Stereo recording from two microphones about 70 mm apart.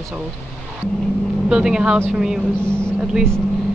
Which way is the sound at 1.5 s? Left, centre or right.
Centre.